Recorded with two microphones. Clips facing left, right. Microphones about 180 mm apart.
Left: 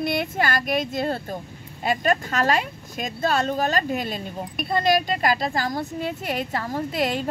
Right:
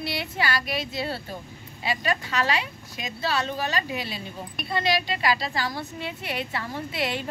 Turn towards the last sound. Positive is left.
turn(degrees=45)  # may be behind; listen again after turning